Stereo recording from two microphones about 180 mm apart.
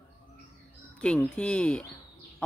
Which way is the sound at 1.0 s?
5° left (ahead or behind).